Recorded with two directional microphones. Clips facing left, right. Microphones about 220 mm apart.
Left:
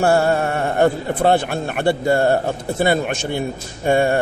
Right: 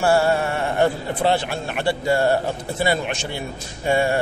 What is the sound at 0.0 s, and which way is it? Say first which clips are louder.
A man's voice: left 2 dB; 50° left (ahead or behind).